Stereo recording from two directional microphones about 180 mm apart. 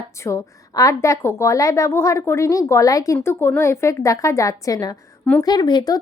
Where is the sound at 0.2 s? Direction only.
15° left (ahead or behind).